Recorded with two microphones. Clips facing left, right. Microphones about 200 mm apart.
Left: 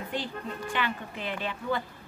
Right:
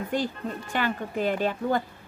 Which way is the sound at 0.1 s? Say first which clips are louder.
Right 6 dB; 45° right (ahead or behind).